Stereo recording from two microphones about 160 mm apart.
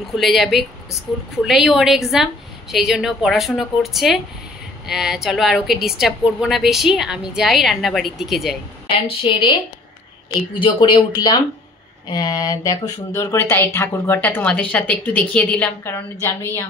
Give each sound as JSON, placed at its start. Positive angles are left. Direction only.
{"t": 0.1, "sound": "a woman's voice", "side_deg": 0}
{"t": 9.2, "sound": "speech", "side_deg": 30}